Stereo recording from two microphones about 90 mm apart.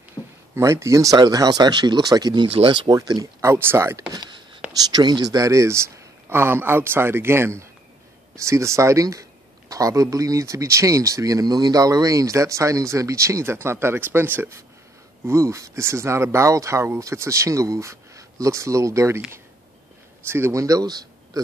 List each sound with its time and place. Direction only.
0.6 s speech: 35° right (ahead or behind)
1.1 s speech: 45° right (ahead or behind)
2.4 s speech: 85° right
2.9 s speech: 45° right (ahead or behind)
3.4 s a man's voice: 30° right (ahead or behind)
4.7 s a man's voice: 50° right (ahead or behind); by 19.2 s 35° right (ahead or behind)
20.2 s speech: 25° right (ahead or behind); by 21.4 s 45° right (ahead or behind)